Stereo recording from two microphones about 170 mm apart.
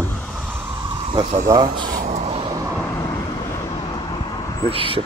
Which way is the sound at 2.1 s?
35° right (ahead or behind).